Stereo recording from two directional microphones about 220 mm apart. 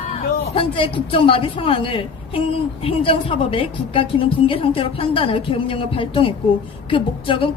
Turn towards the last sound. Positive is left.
turn(degrees=25)  # may be behind; listen again after turning